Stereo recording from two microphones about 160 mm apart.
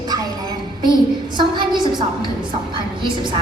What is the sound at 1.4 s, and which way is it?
Speech, 25° right (ahead or behind).